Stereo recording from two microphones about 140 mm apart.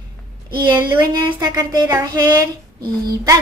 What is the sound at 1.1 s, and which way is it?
A woman's voice, 30° right (ahead or behind).